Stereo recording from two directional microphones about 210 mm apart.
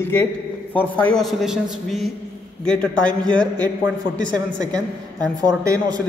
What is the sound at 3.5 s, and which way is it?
Speech, 20° right (ahead or behind).